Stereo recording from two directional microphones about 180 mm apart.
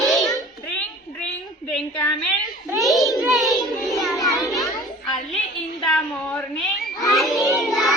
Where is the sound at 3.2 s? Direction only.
Centre (ahead or behind).